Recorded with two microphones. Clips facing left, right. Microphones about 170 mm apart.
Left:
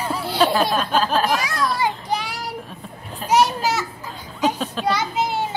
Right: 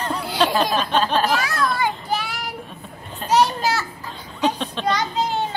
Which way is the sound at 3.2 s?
5° left (ahead or behind).